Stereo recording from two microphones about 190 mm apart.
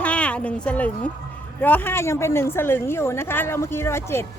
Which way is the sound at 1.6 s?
10° left (ahead or behind).